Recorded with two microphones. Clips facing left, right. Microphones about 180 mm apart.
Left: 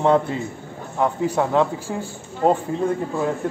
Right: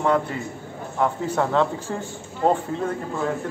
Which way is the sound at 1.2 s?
10° left (ahead or behind).